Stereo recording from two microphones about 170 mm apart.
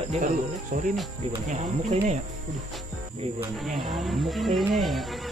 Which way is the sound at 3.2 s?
35° right (ahead or behind).